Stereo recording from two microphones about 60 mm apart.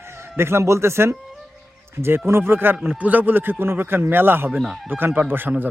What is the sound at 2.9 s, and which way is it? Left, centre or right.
Speech, right.